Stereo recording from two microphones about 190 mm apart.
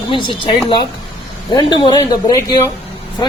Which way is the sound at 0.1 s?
25° left (ahead or behind).